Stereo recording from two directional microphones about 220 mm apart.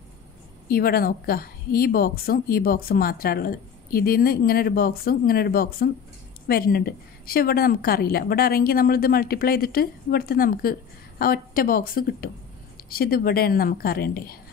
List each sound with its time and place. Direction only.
0.7 s a woman's voice: 40° left (ahead or behind)